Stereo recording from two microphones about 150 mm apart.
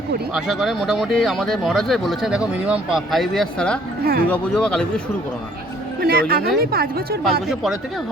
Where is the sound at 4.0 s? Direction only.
90° right.